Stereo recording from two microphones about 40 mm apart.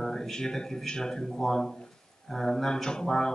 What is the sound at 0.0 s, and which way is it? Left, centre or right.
Speech, centre.